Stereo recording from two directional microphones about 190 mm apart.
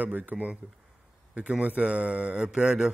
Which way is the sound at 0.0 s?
10° right (ahead or behind).